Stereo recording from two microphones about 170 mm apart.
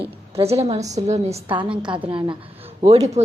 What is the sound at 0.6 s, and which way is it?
A woman's voice, 40° right (ahead or behind).